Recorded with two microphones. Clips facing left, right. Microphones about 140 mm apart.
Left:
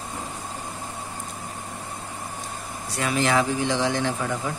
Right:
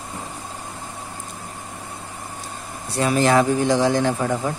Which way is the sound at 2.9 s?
35° right (ahead or behind).